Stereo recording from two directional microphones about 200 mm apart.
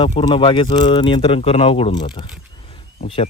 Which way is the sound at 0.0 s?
25° left (ahead or behind).